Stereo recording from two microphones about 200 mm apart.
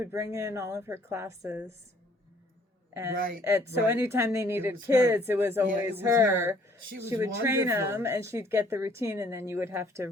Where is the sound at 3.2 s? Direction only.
45° right (ahead or behind).